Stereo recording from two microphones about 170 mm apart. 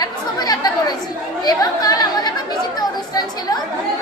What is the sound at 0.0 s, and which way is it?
Chatter, 25° left (ahead or behind).